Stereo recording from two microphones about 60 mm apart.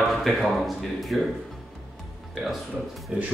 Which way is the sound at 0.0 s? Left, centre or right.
Centre.